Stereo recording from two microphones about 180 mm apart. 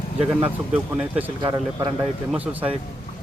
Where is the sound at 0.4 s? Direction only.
5° right (ahead or behind).